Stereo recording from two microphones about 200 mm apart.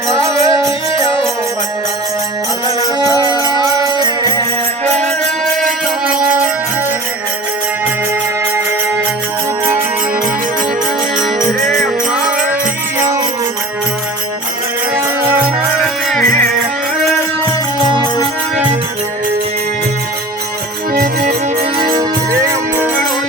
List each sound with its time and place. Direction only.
0.1 s music: 15° right (ahead or behind)
3.2 s music: 20° right (ahead or behind)
4.9 s music: 35° right (ahead or behind)
5.5 s music: centre (ahead or behind)
11.3 s music: 40° right (ahead or behind)
13.0 s music: 15° right (ahead or behind)
14.9 s music: 10° right (ahead or behind)
16.0 s music: centre (ahead or behind)
20.9 s music: 50° right (ahead or behind)
21.8 s music: 20° right (ahead or behind)